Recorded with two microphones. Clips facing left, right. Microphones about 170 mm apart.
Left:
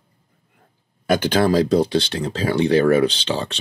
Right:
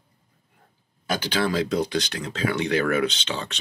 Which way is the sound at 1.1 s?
50° left (ahead or behind).